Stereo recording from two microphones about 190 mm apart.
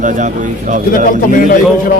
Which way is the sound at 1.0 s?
45° left (ahead or behind).